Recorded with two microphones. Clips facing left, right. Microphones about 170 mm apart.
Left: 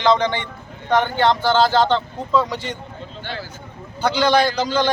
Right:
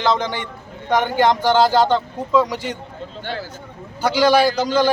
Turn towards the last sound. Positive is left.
turn(degrees=-10)  # may be behind; listen again after turning